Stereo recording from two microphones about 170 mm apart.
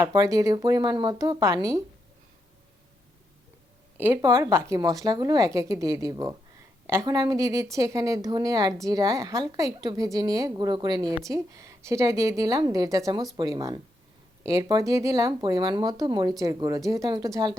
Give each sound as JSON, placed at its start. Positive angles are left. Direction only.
{"t": 0.0, "sound": "a woman's voice", "side_deg": -20}
{"t": 3.9, "sound": "a woman's voice", "side_deg": -10}